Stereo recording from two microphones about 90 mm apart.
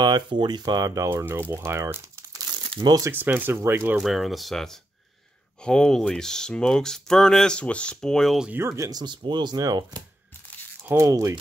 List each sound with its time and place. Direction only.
0.0 s speech: 55° right (ahead or behind); by 1.2 s 35° right (ahead or behind)
1.2 s speech: 25° right (ahead or behind)
2.7 s speech: 70° right (ahead or behind)
3.1 s speech: 20° right (ahead or behind)
4.0 s speech: centre (ahead or behind)
8.5 s speech: 35° right (ahead or behind)
9.0 s speech: 60° right (ahead or behind)
10.8 s speech: 30° right (ahead or behind)